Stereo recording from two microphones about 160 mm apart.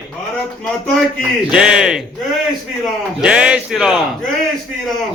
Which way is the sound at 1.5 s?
5° right (ahead or behind).